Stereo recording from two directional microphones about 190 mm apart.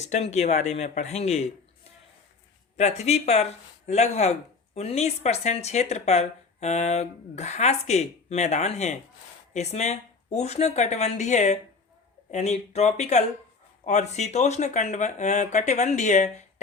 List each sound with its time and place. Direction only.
0.0 s speech: 35° left (ahead or behind)
2.7 s speech: 35° left (ahead or behind)